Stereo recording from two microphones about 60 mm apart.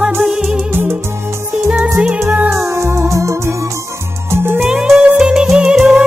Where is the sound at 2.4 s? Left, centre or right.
Right.